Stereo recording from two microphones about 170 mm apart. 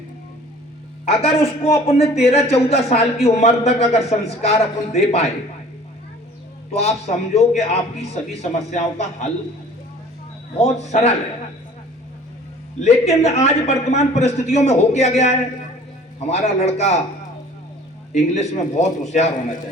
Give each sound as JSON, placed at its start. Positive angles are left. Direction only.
{"t": 1.0, "sound": "a man's voice", "side_deg": 35}
{"t": 6.7, "sound": "a man's voice", "side_deg": 40}
{"t": 10.6, "sound": "a man's voice", "side_deg": 40}
{"t": 12.8, "sound": "a man's voice", "side_deg": 40}
{"t": 16.3, "sound": "a man's voice", "side_deg": 40}
{"t": 18.1, "sound": "a man's voice", "side_deg": 40}